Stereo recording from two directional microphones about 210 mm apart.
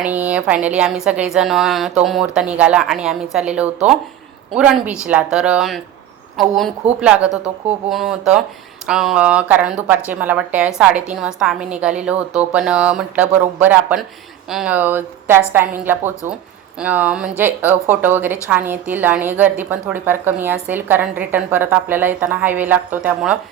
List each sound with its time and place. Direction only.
0.0 s a woman's voice: 5° right (ahead or behind)